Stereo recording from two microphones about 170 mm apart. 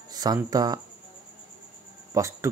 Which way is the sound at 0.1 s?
25° right (ahead or behind).